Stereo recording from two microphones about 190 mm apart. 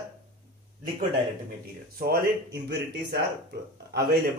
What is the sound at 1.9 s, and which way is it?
Speech, 50° right (ahead or behind).